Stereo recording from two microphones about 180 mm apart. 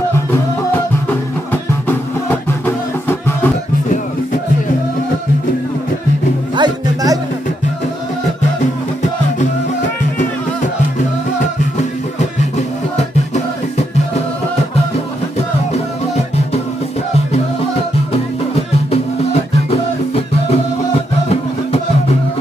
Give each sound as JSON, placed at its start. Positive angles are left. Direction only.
{"t": 1.5, "sound": "music", "side_deg": 10}
{"t": 6.5, "sound": "music", "side_deg": -20}
{"t": 12.2, "sound": "music", "side_deg": 40}
{"t": 18.1, "sound": "music", "side_deg": 35}